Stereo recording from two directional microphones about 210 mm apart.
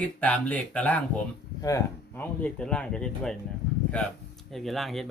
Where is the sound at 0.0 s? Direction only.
5° left (ahead or behind).